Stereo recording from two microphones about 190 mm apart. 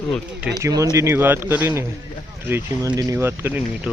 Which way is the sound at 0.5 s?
20° right (ahead or behind).